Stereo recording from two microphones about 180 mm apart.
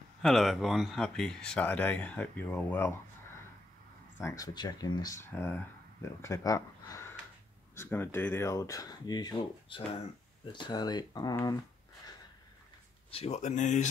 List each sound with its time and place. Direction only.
0.2 s speech: centre (ahead or behind)
4.2 s speech: 20° left (ahead or behind)
13.1 s speech: 35° left (ahead or behind)